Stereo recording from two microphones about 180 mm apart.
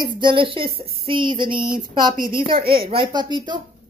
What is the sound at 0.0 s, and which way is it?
Speech, 25° right (ahead or behind).